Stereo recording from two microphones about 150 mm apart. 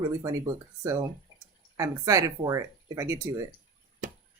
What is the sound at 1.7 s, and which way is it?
Speech, 20° right (ahead or behind).